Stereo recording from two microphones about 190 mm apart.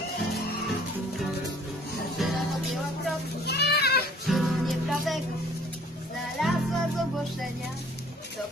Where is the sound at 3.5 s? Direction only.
60° left (ahead or behind).